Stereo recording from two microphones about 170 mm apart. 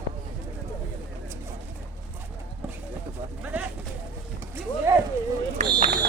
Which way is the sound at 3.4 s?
10° right (ahead or behind).